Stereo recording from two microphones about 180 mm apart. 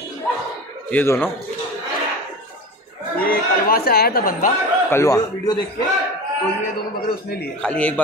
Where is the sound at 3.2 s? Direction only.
55° left (ahead or behind).